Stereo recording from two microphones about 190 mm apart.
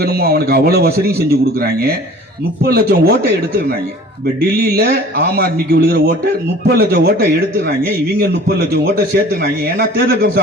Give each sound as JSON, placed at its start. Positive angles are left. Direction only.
{"t": 0.0, "sound": "a man's voice", "side_deg": -55}